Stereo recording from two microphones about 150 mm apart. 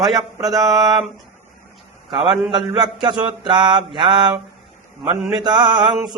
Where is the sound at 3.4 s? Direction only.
30° right (ahead or behind).